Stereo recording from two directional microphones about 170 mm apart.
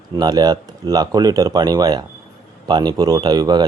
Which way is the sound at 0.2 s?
25° right (ahead or behind).